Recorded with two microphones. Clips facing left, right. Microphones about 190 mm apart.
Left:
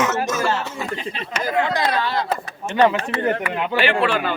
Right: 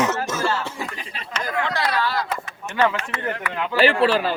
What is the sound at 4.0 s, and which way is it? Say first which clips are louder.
Speech: right 2 dB; 35° right (ahead or behind).